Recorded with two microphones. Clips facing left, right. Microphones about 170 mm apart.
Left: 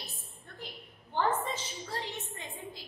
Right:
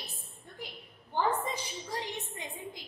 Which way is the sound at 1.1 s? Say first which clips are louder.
Even; 15° right (ahead or behind).